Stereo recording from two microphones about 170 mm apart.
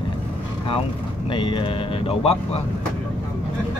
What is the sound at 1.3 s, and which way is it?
Speech, 30° left (ahead or behind).